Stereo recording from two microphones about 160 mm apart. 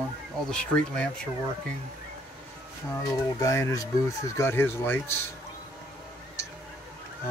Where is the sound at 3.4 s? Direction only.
20° left (ahead or behind).